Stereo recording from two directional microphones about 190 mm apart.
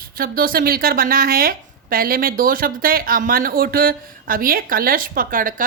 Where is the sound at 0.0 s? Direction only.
50° right (ahead or behind).